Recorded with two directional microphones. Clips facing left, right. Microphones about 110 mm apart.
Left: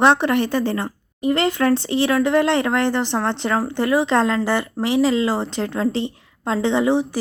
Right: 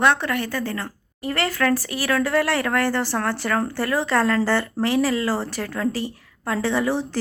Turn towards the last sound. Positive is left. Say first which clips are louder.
# left 4 dB
turn(degrees=15)  # may be behind; listen again after turning